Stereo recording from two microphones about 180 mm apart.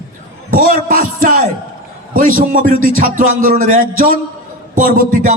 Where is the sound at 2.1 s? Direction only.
50° right (ahead or behind).